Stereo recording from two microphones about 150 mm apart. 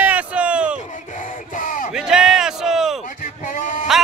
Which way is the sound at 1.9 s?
5° right (ahead or behind).